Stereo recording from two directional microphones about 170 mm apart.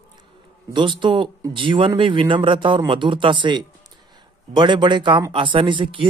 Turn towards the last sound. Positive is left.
turn(degrees=-30)  # may be behind; listen again after turning